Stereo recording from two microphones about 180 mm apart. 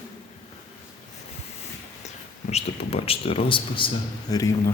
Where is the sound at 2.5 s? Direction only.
35° left (ahead or behind).